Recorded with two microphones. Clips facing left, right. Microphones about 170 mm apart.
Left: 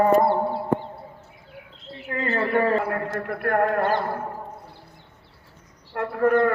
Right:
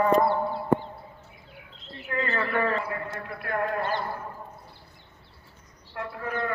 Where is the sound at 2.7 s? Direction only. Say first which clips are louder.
Left 7 dB; 60° left (ahead or behind).